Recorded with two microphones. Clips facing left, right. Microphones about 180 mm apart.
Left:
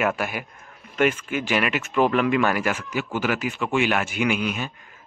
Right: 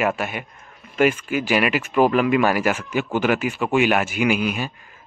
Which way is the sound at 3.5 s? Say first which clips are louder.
Right 4 dB; 15° right (ahead or behind).